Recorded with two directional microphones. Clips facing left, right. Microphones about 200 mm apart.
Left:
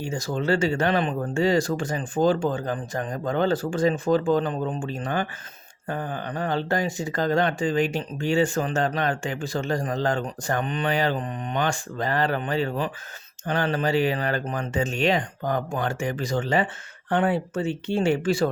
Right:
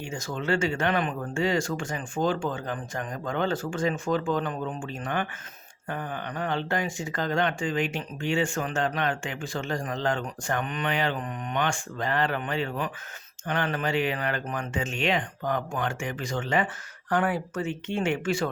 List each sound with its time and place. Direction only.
0.0 s speech: 35° left (ahead or behind)